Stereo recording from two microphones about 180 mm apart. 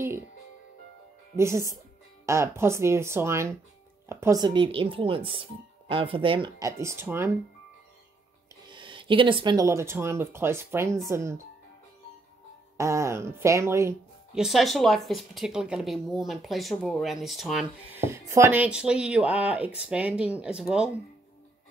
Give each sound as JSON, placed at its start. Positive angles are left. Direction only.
{"t": 1.3, "sound": "speech", "side_deg": -15}
{"t": 6.8, "sound": "speech", "side_deg": -15}
{"t": 8.6, "sound": "speech", "side_deg": -25}
{"t": 12.7, "sound": "speech", "side_deg": -15}
{"t": 14.3, "sound": "speech", "side_deg": 0}